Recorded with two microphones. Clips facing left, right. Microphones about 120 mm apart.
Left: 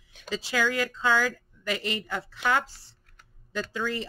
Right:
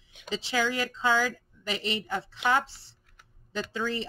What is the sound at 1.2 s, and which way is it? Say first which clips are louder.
Speech: left 2 dB; 50° left (ahead or behind).